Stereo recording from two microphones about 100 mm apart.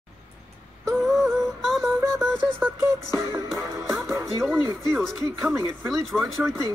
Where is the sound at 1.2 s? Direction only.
Centre (ahead or behind).